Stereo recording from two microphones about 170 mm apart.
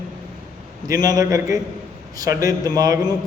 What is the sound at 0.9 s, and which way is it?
Speech, 20° right (ahead or behind).